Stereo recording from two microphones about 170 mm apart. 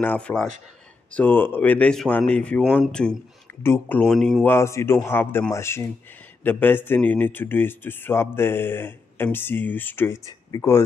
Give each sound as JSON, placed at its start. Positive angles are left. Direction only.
{"t": 0.0, "sound": "speech", "side_deg": 10}
{"t": 4.0, "sound": "speech", "side_deg": 5}
{"t": 4.6, "sound": "speech", "side_deg": 15}